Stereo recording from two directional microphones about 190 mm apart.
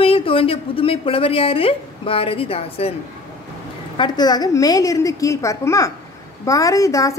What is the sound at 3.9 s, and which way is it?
A woman's voice, 25° left (ahead or behind).